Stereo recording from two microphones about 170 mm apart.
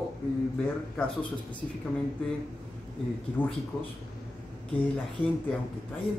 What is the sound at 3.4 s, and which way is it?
Speech, 10° left (ahead or behind).